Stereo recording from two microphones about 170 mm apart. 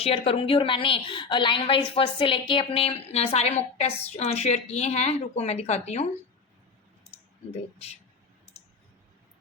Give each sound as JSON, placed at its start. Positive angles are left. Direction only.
{"t": 0.0, "sound": "a woman's voice", "side_deg": 35}